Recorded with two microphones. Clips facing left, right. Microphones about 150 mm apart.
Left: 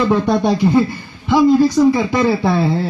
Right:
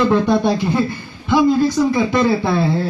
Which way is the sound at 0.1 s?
20° left (ahead or behind).